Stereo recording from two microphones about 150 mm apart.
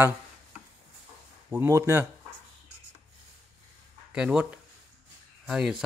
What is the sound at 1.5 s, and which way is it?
Speech, 15° right (ahead or behind).